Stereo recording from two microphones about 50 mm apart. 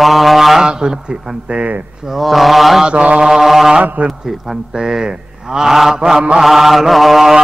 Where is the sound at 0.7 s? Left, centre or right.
Centre.